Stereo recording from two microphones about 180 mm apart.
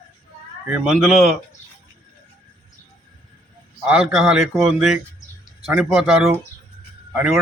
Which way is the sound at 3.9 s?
Centre (ahead or behind).